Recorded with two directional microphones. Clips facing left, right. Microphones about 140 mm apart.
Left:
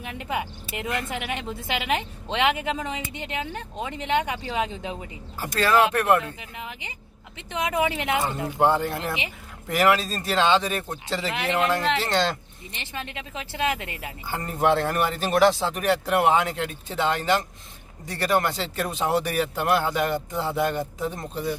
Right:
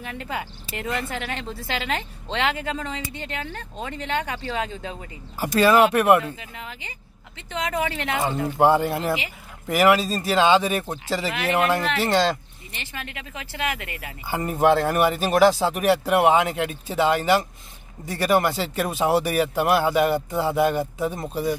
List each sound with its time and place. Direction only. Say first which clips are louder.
0.0 s a woman's voice: left 1 dB; 20° left (ahead or behind)
5.4 s speech: right 4 dB; 15° right (ahead or behind)
6.4 s speech: even; 20° left (ahead or behind)
8.5 s speech: right 3 dB; 10° right (ahead or behind)
12.7 s speech: left 1 dB; 25° left (ahead or behind)
14.2 s speech: right 4 dB; 10° right (ahead or behind)